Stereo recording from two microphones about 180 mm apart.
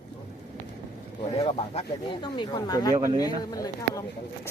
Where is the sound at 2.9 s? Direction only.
20° right (ahead or behind).